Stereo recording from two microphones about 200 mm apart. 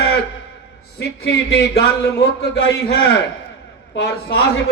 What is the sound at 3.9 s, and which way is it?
Speech, 60° left (ahead or behind).